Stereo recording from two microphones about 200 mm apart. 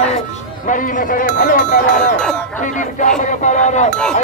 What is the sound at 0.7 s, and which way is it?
Speech, 40° left (ahead or behind).